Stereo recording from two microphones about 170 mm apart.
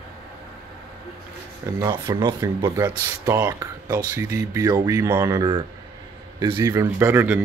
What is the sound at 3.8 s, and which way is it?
Speech, 20° right (ahead or behind).